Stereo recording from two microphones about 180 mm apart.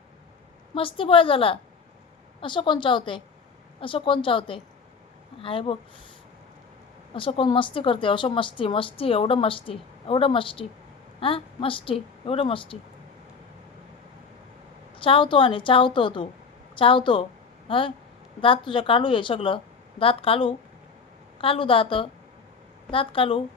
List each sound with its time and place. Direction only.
0.7 s a woman's voice: 30° left (ahead or behind)
7.1 s a woman's voice: 30° left (ahead or behind)
14.9 s a woman's voice: 30° left (ahead or behind)